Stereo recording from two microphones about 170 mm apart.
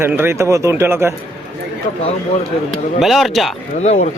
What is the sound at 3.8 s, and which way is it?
Speech, 40° left (ahead or behind).